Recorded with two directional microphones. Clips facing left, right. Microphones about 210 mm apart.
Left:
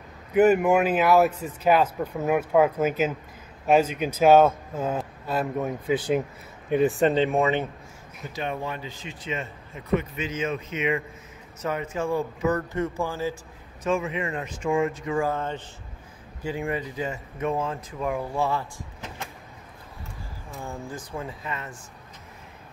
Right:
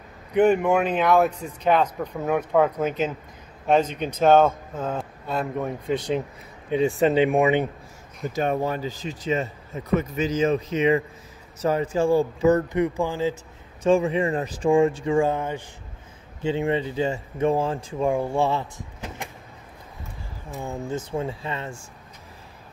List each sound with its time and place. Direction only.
0.3 s speech: 5° left (ahead or behind)
7.2 s speech: 15° right (ahead or behind)
8.4 s speech: 40° right (ahead or behind); by 13.4 s 20° right (ahead or behind)
13.8 s speech: 30° right (ahead or behind)
16.4 s speech: 25° right (ahead or behind)
20.6 s speech: 20° right (ahead or behind)